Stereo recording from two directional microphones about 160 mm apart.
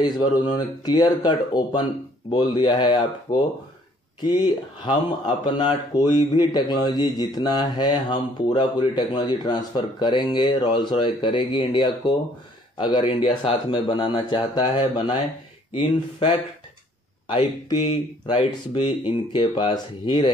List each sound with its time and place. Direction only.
0.0 s speech: 25° left (ahead or behind)
4.8 s speech: 30° left (ahead or behind)